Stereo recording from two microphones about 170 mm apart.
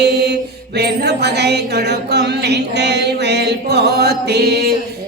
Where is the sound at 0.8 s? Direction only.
75° right (ahead or behind).